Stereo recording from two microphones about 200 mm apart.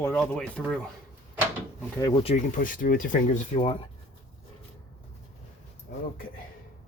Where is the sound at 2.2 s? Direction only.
35° left (ahead or behind).